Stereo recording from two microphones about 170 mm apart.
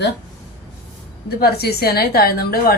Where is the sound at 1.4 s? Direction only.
65° left (ahead or behind).